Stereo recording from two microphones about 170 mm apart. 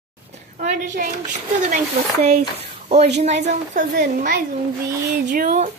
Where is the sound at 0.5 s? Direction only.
50° right (ahead or behind).